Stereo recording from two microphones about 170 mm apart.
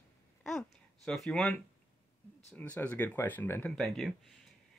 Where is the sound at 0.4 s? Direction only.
5° left (ahead or behind).